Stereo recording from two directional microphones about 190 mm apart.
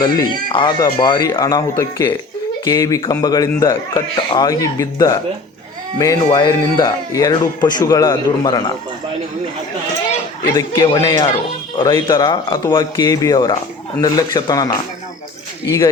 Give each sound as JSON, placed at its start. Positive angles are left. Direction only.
{"t": 0.0, "sound": "speech", "side_deg": 25}
{"t": 10.5, "sound": "speech", "side_deg": 15}